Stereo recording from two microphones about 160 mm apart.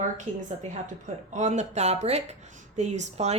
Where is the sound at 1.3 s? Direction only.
45° right (ahead or behind).